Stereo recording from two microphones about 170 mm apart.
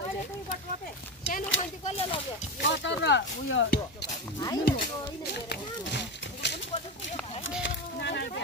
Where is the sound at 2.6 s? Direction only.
90° left.